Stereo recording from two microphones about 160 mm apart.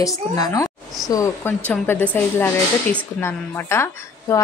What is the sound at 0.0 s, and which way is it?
A woman's voice, 20° left (ahead or behind).